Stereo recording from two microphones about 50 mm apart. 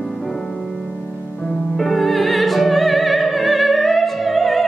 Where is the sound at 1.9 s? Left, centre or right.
Centre.